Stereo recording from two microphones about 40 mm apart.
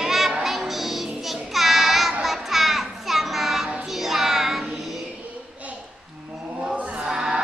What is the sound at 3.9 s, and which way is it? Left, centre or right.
Music, centre.